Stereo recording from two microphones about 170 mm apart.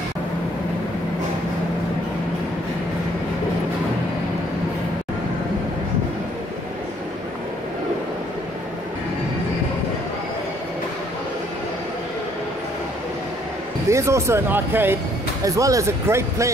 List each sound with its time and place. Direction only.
13.8 s speech: 15° right (ahead or behind)